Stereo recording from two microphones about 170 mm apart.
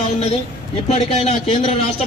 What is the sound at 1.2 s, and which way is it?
Speech, 40° left (ahead or behind).